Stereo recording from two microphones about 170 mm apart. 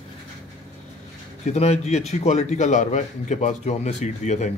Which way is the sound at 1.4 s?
40° left (ahead or behind).